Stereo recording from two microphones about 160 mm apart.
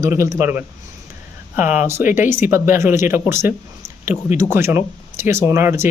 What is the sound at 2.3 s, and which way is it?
Speech, 15° right (ahead or behind).